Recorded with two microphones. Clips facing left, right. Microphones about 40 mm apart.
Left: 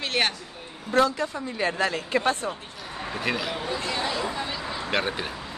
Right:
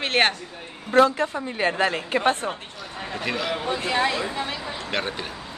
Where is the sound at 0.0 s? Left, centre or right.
Right.